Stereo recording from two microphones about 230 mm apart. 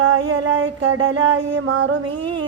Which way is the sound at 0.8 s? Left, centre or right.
Right.